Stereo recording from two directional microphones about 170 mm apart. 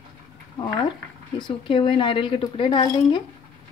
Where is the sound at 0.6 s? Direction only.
25° left (ahead or behind).